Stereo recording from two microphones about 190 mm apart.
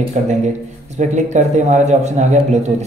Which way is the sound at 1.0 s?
40° right (ahead or behind).